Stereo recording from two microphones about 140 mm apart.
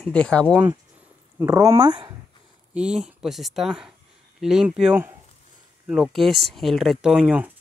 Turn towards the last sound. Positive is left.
turn(degrees=-10)  # may be behind; listen again after turning